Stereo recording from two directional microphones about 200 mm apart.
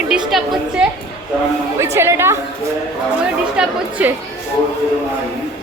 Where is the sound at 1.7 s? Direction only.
15° right (ahead or behind).